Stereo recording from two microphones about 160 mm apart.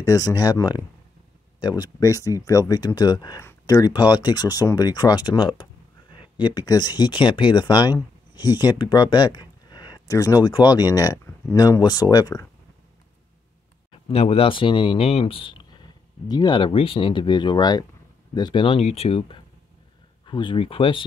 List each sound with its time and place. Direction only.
0.0 s speech: 20° left (ahead or behind)
13.9 s speech: 35° left (ahead or behind)